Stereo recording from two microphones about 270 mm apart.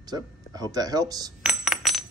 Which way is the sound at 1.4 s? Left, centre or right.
Centre.